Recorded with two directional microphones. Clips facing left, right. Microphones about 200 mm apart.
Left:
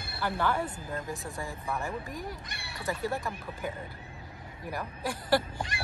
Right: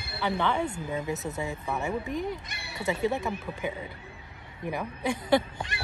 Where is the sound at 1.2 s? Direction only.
20° right (ahead or behind).